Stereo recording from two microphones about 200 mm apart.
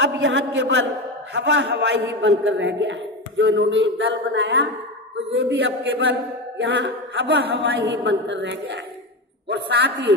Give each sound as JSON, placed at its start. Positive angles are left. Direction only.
{"t": 0.0, "sound": "a man's voice", "side_deg": -65}